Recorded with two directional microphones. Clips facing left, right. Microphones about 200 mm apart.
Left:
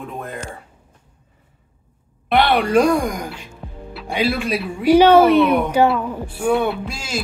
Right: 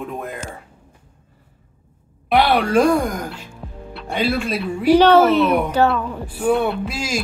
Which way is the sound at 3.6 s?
Centre (ahead or behind).